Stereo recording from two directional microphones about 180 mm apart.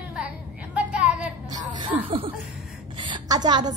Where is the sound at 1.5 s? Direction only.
25° right (ahead or behind).